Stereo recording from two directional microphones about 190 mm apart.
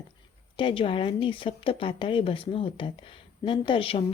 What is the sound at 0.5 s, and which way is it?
Speech, 25° left (ahead or behind).